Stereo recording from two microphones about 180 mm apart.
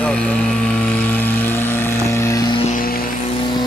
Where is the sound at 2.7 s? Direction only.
55° left (ahead or behind).